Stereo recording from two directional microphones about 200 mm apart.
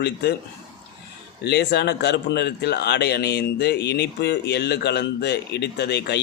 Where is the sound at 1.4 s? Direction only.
55° left (ahead or behind).